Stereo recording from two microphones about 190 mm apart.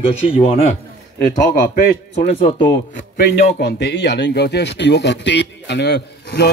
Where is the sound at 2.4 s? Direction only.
30° left (ahead or behind).